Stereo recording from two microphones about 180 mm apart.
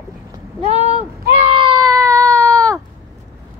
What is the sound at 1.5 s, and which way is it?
Baby cry, 25° right (ahead or behind).